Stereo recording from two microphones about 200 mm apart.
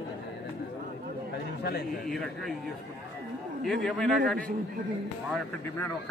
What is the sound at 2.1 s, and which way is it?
Speech, centre (ahead or behind).